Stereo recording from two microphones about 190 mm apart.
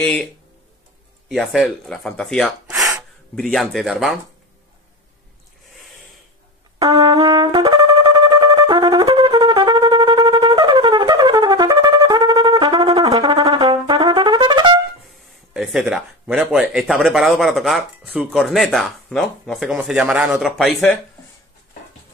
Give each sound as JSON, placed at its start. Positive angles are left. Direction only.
{"t": 0.0, "sound": "speech", "side_deg": 5}
{"t": 1.3, "sound": "speech", "side_deg": 0}
{"t": 2.8, "sound": "gasp", "side_deg": -15}
{"t": 3.3, "sound": "speech", "side_deg": 0}
{"t": 6.8, "sound": "brass instrument", "side_deg": -20}
{"t": 13.2, "sound": "trumpet", "side_deg": -20}
{"t": 15.5, "sound": "speech", "side_deg": -5}